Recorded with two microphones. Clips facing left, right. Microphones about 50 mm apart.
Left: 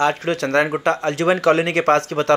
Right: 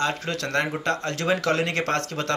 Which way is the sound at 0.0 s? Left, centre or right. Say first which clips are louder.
Left 7 dB; left.